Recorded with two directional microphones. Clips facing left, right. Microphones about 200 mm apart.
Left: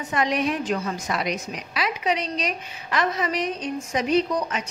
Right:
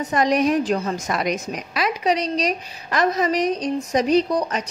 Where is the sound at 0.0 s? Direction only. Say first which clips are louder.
Right 5 dB; 40° right (ahead or behind).